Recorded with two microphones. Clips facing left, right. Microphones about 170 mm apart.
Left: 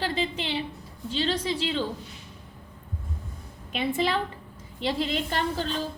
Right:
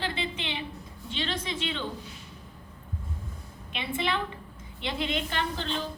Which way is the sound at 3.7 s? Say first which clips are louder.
Left 5 dB; 40° left (ahead or behind).